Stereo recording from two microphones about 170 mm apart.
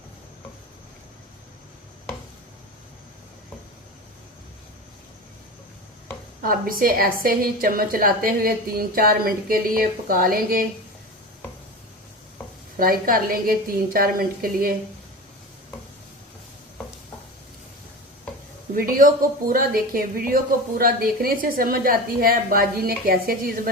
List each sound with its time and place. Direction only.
6.4 s speech: 55° right (ahead or behind)
12.7 s speech: 55° right (ahead or behind)
18.7 s speech: 55° right (ahead or behind)